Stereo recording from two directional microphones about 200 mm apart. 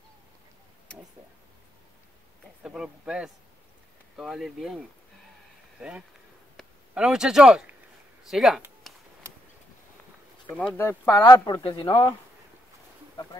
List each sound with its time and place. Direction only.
2.6 s speech: 5° right (ahead or behind)
8.8 s a sound: centre (ahead or behind)
10.8 s speech: 10° left (ahead or behind)